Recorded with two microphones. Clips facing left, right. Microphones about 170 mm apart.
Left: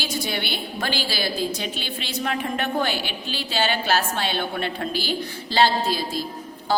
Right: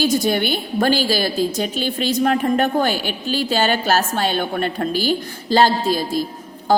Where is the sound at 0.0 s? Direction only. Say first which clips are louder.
Right 10 dB; 45° right (ahead or behind).